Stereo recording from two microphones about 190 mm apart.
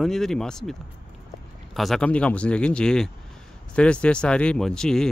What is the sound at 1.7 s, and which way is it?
Speech, centre (ahead or behind).